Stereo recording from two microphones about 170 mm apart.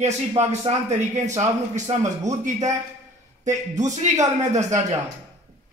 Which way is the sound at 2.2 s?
45° right (ahead or behind).